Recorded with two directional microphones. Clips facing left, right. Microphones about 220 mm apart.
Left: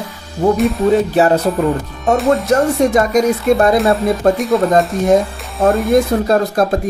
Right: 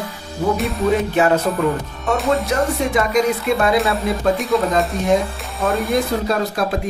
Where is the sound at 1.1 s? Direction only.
35° left (ahead or behind).